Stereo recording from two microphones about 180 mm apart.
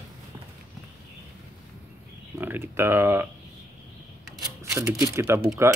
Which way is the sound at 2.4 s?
10° right (ahead or behind).